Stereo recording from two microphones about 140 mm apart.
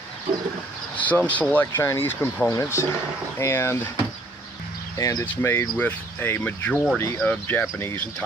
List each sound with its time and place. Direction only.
0.9 s speech: 10° left (ahead or behind)
4.9 s speech: 25° left (ahead or behind)